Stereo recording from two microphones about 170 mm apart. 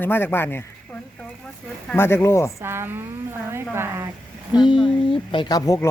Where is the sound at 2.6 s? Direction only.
15° right (ahead or behind).